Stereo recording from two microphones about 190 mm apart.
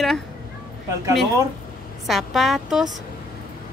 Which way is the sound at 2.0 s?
Centre (ahead or behind).